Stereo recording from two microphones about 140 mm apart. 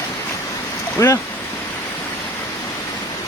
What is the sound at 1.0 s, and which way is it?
Speech, 20° left (ahead or behind).